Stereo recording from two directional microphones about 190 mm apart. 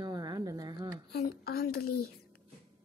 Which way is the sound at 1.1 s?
55° left (ahead or behind).